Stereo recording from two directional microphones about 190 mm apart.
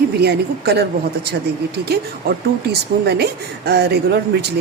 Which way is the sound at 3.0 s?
60° right (ahead or behind).